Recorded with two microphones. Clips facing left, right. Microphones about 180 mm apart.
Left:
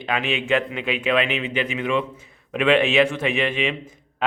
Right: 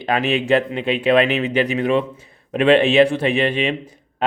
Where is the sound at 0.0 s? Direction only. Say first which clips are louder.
Right 5 dB; 40° right (ahead or behind).